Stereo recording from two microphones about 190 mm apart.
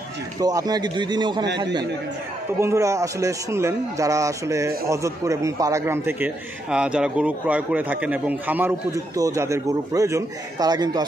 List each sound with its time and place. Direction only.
0.4 s a man's voice: 20° right (ahead or behind)